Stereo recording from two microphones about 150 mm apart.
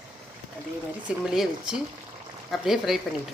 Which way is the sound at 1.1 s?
5° right (ahead or behind).